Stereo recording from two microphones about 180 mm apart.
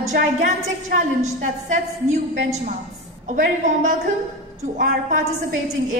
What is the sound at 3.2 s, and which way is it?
Speech, 45° right (ahead or behind).